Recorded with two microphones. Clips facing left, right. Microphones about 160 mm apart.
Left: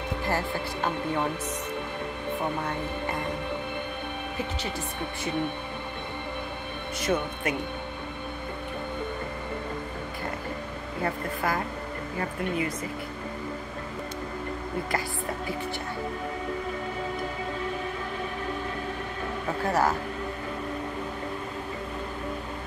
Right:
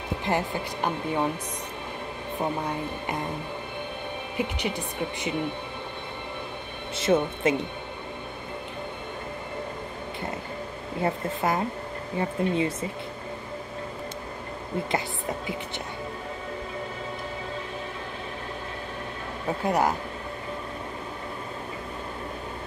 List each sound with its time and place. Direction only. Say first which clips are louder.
0.2 s speech: right 2 dB; 20° right (ahead or behind)
7.0 s speech: right 5 dB; 25° right (ahead or behind)
11.0 s speech: right 3 dB; 25° right (ahead or behind)
19.6 s speech: right 1 dB; 20° right (ahead or behind)